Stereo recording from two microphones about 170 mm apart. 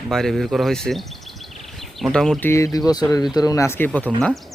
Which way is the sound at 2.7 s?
20° left (ahead or behind).